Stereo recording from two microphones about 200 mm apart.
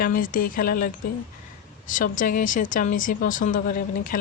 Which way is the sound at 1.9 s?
40° left (ahead or behind).